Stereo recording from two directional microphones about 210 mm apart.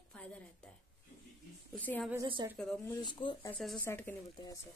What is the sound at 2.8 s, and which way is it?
Speech, 15° left (ahead or behind).